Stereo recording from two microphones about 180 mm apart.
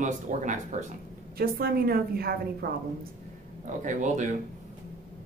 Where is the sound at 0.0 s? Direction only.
45° right (ahead or behind).